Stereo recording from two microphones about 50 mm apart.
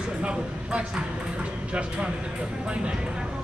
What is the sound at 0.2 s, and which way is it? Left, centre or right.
A woman's voice, right.